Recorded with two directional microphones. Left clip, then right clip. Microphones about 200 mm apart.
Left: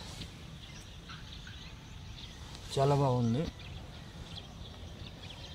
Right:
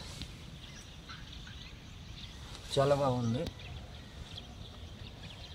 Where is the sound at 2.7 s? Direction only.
5° left (ahead or behind).